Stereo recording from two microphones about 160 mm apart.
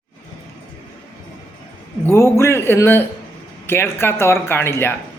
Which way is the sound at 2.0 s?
15° left (ahead or behind).